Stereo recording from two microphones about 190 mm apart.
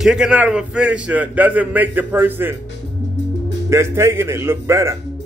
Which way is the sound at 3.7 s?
15° right (ahead or behind).